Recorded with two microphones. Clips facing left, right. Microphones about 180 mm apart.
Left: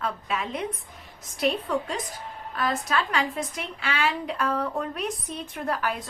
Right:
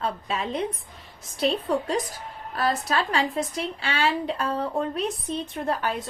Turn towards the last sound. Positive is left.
turn(degrees=-25)  # may be behind; listen again after turning